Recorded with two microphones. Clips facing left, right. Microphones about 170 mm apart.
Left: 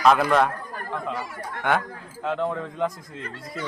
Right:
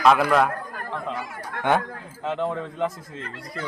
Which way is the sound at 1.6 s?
20° right (ahead or behind).